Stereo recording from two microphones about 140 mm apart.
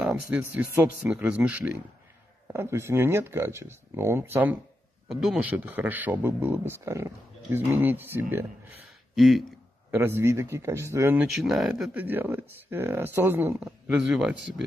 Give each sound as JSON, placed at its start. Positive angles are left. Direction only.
{"t": 0.0, "sound": "speech", "side_deg": -10}
{"t": 5.0, "sound": "a man's voice", "side_deg": 0}
{"t": 9.1, "sound": "speech", "side_deg": 0}
{"t": 9.8, "sound": "a man's voice", "side_deg": -15}
{"t": 11.3, "sound": "speech", "side_deg": 0}
{"t": 11.9, "sound": "speech", "side_deg": -15}
{"t": 13.7, "sound": "speech", "side_deg": -5}